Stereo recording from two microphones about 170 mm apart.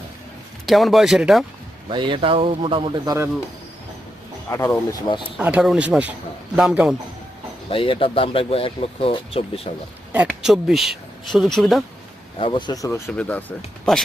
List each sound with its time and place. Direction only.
0.6 s speech: centre (ahead or behind)
1.9 s speech: 30° right (ahead or behind)
4.4 s speech: 15° left (ahead or behind)
5.0 s speech: 30° left (ahead or behind)
5.4 s speech: 10° right (ahead or behind)
7.7 s speech: 30° left (ahead or behind)
10.1 s speech: 5° right (ahead or behind)
12.4 s speech: 25° left (ahead or behind); by 14.0 s 5° left (ahead or behind)